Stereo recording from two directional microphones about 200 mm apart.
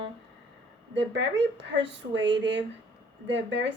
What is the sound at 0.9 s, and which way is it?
A woman's voice, 65° right (ahead or behind).